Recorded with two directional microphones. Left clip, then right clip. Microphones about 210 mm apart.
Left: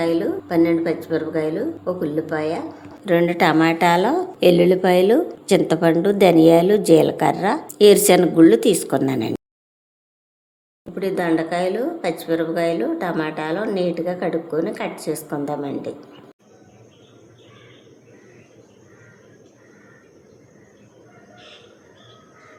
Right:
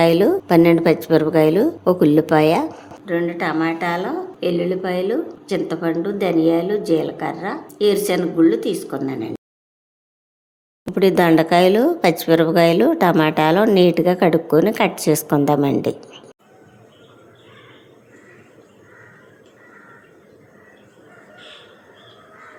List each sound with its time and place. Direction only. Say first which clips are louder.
0.0 s speech: right 6 dB; 50° right (ahead or behind)
3.1 s a woman's voice: left 5 dB; 30° left (ahead or behind)
10.9 s speech: right 7 dB; 45° right (ahead or behind)